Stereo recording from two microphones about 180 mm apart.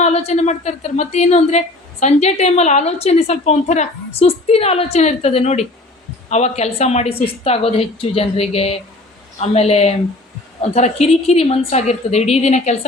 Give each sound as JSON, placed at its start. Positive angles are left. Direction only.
{"t": 0.0, "sound": "a woman's voice", "side_deg": 35}